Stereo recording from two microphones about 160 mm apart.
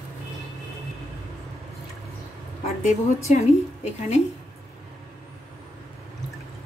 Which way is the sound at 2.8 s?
45° left (ahead or behind).